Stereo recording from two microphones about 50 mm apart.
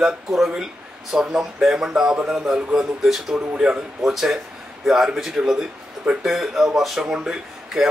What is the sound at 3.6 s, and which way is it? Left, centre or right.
Speech, centre.